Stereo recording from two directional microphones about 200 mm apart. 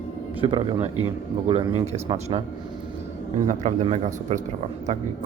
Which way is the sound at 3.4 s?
35° right (ahead or behind).